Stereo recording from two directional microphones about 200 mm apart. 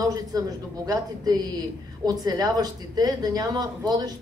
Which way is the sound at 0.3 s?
20° right (ahead or behind).